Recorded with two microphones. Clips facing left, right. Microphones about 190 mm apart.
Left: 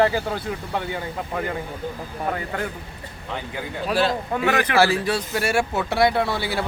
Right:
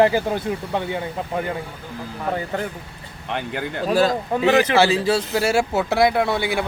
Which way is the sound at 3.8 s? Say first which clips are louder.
Right 4 dB; 40° right (ahead or behind).